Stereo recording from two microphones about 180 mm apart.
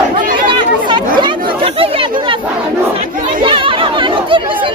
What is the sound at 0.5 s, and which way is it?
Chatter, 25° right (ahead or behind).